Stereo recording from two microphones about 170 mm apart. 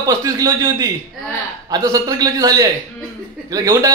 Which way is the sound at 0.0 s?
20° right (ahead or behind).